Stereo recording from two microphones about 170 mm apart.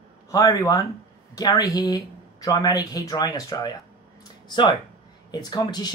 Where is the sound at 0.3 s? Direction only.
20° left (ahead or behind).